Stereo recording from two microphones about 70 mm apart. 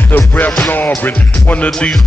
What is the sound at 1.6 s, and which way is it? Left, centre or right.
Music, centre.